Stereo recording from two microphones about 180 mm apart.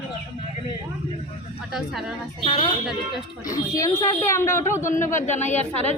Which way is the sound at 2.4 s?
25° left (ahead or behind).